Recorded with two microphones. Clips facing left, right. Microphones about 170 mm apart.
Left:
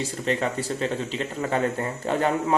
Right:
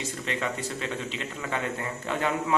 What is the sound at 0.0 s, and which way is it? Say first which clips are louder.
Speech: left 6 dB; 35° left (ahead or behind).